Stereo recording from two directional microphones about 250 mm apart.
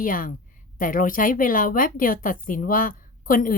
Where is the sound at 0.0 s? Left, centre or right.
Left.